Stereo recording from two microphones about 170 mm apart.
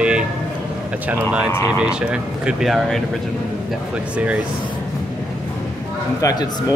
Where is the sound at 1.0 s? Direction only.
10° right (ahead or behind).